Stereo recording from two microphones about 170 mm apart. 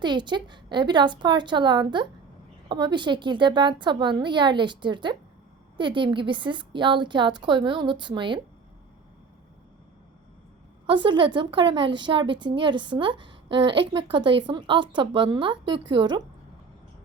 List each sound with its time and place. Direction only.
0.0 s a woman's voice: 25° right (ahead or behind)
10.8 s a woman's voice: 25° right (ahead or behind)